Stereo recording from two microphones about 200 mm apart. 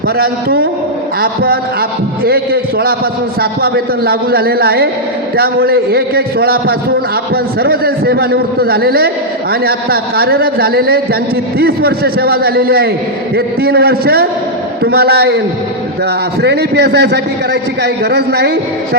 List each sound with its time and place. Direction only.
0.2 s a man's voice: 50° right (ahead or behind)
16.4 s a man's voice: 55° right (ahead or behind)